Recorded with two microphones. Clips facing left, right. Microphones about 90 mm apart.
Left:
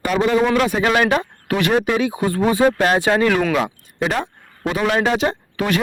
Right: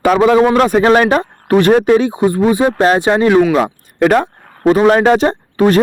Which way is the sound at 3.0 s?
25° right (ahead or behind).